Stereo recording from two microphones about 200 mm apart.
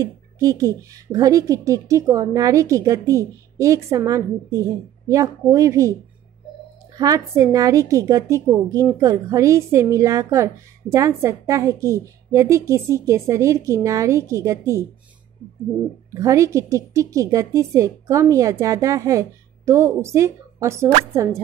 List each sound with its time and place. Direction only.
0.0 s a woman's voice: 15° right (ahead or behind)
7.0 s a woman's voice: 15° right (ahead or behind)
16.1 s a woman's voice: 15° right (ahead or behind)